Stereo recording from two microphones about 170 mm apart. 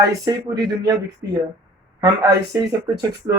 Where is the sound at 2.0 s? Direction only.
20° right (ahead or behind).